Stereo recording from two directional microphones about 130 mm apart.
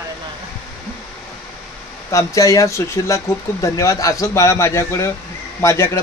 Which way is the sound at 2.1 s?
25° left (ahead or behind).